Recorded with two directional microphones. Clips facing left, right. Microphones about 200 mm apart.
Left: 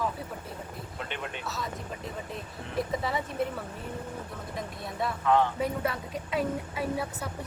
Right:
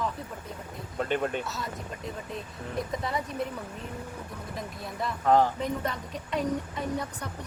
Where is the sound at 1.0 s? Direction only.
45° right (ahead or behind).